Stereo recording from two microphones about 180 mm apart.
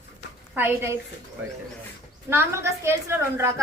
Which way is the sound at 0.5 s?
15° right (ahead or behind).